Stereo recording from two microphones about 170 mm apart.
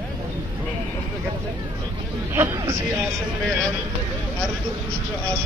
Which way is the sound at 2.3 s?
15° right (ahead or behind).